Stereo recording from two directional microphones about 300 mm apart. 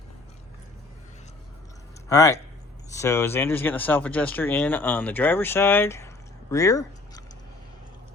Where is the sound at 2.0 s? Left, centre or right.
Centre.